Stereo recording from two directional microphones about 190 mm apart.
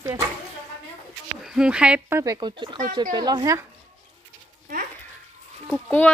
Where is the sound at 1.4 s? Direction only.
5° right (ahead or behind); by 3.6 s 20° right (ahead or behind).